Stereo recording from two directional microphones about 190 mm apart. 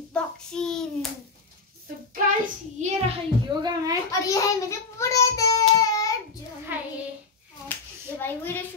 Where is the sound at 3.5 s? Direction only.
25° right (ahead or behind).